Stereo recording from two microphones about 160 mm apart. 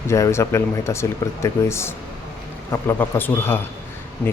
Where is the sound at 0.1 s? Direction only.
15° left (ahead or behind).